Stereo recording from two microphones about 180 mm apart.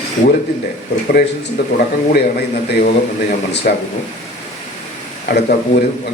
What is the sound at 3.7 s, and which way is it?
Speech, 55° left (ahead or behind).